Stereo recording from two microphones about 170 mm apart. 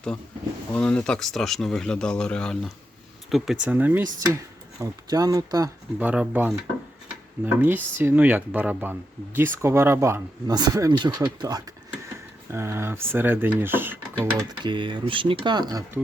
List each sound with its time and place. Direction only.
0.8 s speech: 5° left (ahead or behind); by 5.7 s 20° right (ahead or behind)
6.0 s speech: 10° right (ahead or behind)
14.6 s speech: 30° right (ahead or behind)